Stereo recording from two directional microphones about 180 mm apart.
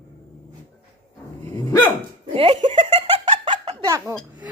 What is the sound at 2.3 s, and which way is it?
Speech, 40° right (ahead or behind).